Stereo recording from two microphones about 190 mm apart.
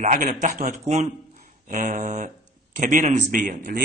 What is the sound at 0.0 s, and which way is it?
A man's voice, 45° right (ahead or behind).